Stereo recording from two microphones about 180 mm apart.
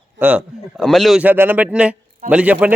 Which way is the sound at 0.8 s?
Centre (ahead or behind).